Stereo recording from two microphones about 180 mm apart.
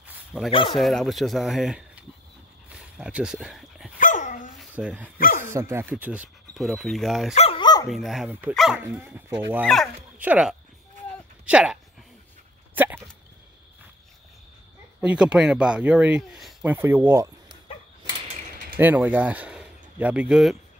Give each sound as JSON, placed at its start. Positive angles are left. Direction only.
{"t": 0.0, "sound": "a sound", "side_deg": -5}
{"t": 0.5, "sound": "speech", "side_deg": 30}
{"t": 0.7, "sound": "speech", "side_deg": 0}
{"t": 2.7, "sound": "a sound", "side_deg": -5}
{"t": 4.0, "sound": "dog", "side_deg": 45}
{"t": 4.6, "sound": "speech", "side_deg": -5}
{"t": 7.3, "sound": "dog", "side_deg": 30}
{"t": 7.9, "sound": "speech", "side_deg": 0}
{"t": 12.7, "sound": "dog", "side_deg": -10}
{"t": 15.0, "sound": "speech", "side_deg": -5}
{"t": 16.7, "sound": "speech", "side_deg": -10}
{"t": 18.0, "sound": "a sound", "side_deg": -25}
{"t": 18.8, "sound": "speech", "side_deg": -10}